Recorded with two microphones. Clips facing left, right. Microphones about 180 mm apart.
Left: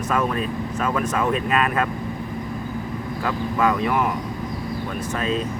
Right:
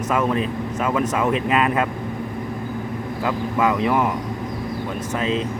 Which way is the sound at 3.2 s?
20° right (ahead or behind).